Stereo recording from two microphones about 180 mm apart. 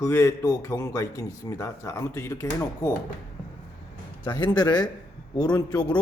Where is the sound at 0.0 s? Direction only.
15° left (ahead or behind).